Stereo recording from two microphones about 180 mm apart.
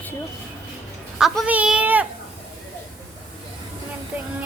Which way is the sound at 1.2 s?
5° right (ahead or behind).